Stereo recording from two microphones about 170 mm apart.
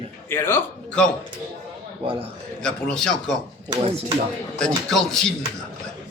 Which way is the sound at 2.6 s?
5° left (ahead or behind).